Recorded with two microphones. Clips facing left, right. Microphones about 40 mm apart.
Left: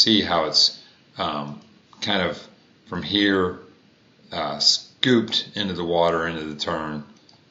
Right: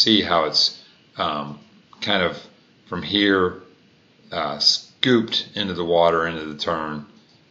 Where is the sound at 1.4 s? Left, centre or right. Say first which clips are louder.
Right 1 dB; right.